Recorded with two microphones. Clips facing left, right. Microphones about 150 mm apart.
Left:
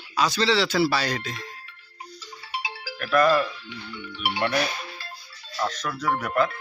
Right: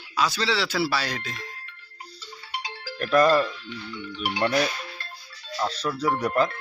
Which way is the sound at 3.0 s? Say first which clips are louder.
Right 1 dB; 35° right (ahead or behind).